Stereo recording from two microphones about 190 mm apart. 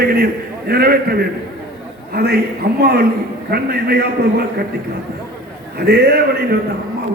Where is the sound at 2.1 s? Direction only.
55° right (ahead or behind).